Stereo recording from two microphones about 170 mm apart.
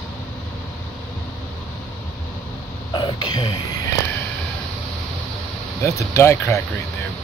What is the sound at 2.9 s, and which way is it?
Throat clearing, 25° left (ahead or behind).